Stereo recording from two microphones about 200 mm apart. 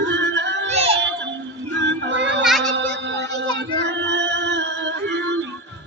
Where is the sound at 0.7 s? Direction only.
30° right (ahead or behind).